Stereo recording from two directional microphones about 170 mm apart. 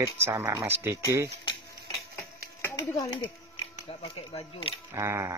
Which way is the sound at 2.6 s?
20° left (ahead or behind).